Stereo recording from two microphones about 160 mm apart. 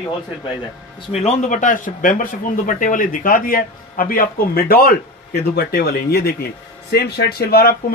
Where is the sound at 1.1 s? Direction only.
40° left (ahead or behind).